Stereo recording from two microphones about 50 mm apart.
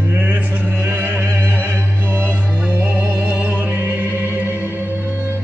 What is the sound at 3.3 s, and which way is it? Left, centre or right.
Music, right.